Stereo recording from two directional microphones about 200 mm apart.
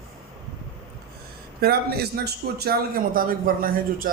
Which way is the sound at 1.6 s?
50° right (ahead or behind).